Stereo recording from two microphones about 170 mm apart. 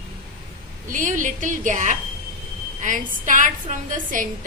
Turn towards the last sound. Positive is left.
turn(degrees=-50)  # may be behind; listen again after turning